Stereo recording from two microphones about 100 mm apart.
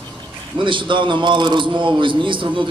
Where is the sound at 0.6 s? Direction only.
55° right (ahead or behind).